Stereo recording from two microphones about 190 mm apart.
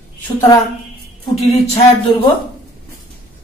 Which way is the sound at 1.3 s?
35° left (ahead or behind).